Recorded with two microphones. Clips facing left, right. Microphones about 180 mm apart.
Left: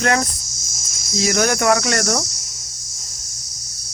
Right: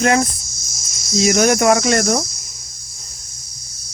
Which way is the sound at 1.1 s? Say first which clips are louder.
Right 4 dB; 20° right (ahead or behind).